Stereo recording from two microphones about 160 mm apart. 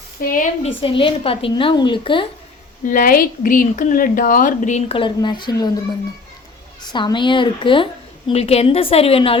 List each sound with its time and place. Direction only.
0.2 s a woman's voice: 60° left (ahead or behind)
0.6 s a woman's voice: 35° left (ahead or behind)
2.8 s a woman's voice: 60° left (ahead or behind)
4.9 s speech: 30° left (ahead or behind)
6.9 s a woman's voice: 30° left (ahead or behind)